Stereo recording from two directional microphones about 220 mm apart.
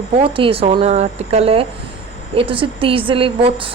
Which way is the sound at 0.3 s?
25° right (ahead or behind).